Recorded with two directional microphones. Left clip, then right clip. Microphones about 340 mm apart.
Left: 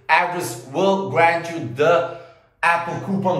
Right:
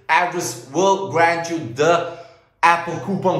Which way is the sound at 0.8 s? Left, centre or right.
Centre.